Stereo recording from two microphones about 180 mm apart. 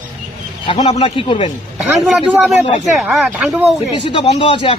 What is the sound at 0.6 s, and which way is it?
Speech, 25° left (ahead or behind).